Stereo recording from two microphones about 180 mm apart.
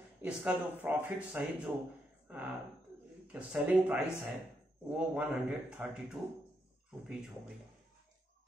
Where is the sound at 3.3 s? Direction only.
5° right (ahead or behind).